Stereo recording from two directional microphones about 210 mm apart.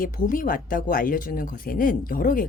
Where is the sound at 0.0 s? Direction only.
40° left (ahead or behind).